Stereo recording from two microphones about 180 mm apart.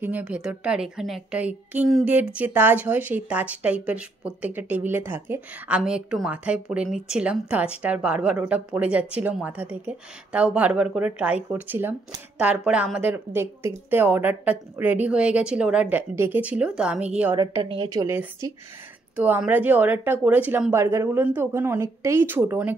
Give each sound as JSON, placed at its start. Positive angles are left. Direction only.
{"t": 0.0, "sound": "a woman's voice", "side_deg": -10}
{"t": 17.4, "sound": "a woman's voice", "side_deg": -30}
{"t": 18.0, "sound": "a woman's voice", "side_deg": -15}